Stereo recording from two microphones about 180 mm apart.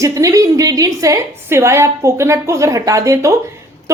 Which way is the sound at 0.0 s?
20° right (ahead or behind).